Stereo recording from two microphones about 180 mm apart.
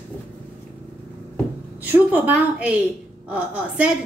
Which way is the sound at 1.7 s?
10° right (ahead or behind).